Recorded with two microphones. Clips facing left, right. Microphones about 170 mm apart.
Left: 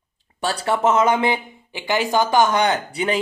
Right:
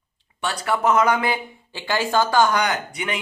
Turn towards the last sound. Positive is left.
turn(degrees=30)  # may be behind; listen again after turning